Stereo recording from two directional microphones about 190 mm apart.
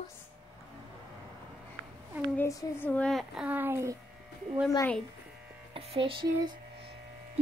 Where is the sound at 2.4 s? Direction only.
15° left (ahead or behind); by 3.9 s 10° right (ahead or behind).